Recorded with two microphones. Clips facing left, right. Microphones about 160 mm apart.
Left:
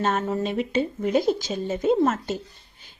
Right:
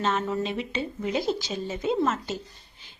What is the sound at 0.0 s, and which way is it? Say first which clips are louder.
Speech: left 2 dB; 45° left (ahead or behind).